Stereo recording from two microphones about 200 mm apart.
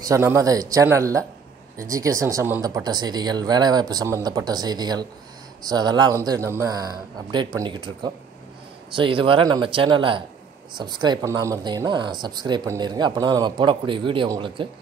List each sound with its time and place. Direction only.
0.0 s speech: 15° right (ahead or behind)